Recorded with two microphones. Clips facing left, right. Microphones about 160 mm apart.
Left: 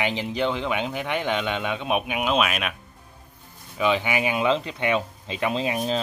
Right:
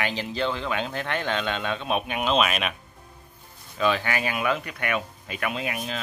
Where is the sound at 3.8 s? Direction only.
15° left (ahead or behind).